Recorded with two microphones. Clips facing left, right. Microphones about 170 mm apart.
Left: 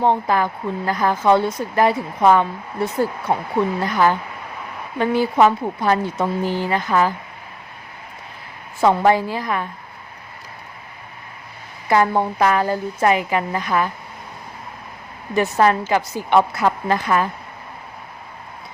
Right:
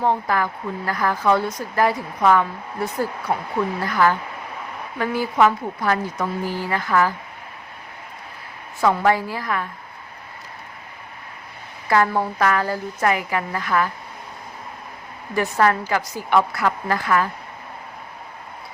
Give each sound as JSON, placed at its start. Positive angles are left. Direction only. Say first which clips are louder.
{"t": 0.0, "sound": "speech", "louder": "left 3 dB", "side_deg": 25}
{"t": 8.8, "sound": "speech", "louder": "left 3 dB", "side_deg": 25}
{"t": 11.9, "sound": "speech", "louder": "left 2 dB", "side_deg": 20}
{"t": 15.4, "sound": "speech", "louder": "left 3 dB", "side_deg": 20}